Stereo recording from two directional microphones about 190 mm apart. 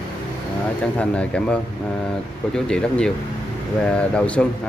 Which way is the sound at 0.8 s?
5° left (ahead or behind).